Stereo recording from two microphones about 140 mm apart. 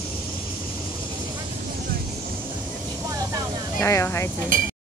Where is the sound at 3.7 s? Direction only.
20° left (ahead or behind).